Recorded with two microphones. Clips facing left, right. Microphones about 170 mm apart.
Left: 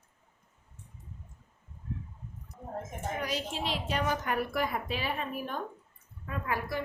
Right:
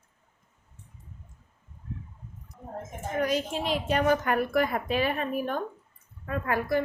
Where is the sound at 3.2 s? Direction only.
50° right (ahead or behind).